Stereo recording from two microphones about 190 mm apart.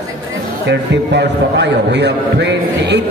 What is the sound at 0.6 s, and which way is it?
A man's voice, 65° right (ahead or behind).